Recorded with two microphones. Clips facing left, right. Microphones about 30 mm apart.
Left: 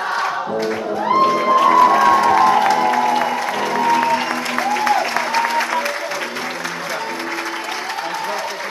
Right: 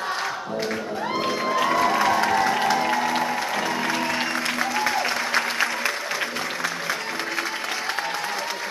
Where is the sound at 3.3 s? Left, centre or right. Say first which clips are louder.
Left 5 dB; centre.